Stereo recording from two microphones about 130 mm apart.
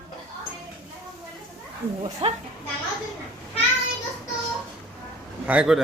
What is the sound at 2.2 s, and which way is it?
Speech, 50° right (ahead or behind).